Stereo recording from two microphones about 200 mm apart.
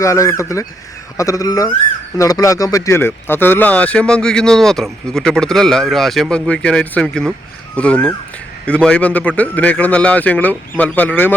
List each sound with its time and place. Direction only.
0.0 s a man's voice: 15° left (ahead or behind)